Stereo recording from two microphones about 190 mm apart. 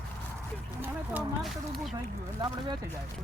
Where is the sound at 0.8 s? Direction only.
5° right (ahead or behind).